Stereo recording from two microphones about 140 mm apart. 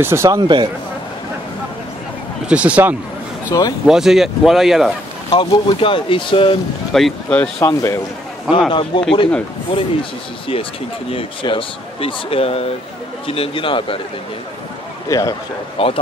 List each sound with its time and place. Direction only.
0.0 s speech: 20° right (ahead or behind)
0.4 s speech: 35° right (ahead or behind)
2.4 s speech: 10° right (ahead or behind)
3.5 s a man's voice: 30° left (ahead or behind)
3.8 s speech: 5° right (ahead or behind)
5.3 s speech: 35° left (ahead or behind)
6.9 s speech: centre (ahead or behind)
7.6 s a man's voice: 20° left (ahead or behind)
8.5 s speech: 5° right (ahead or behind)
8.9 s speech: 35° left (ahead or behind)
11.1 s speech: 40° left (ahead or behind)
15.0 s a man's voice: 25° left (ahead or behind)
15.8 s speech: 40° left (ahead or behind)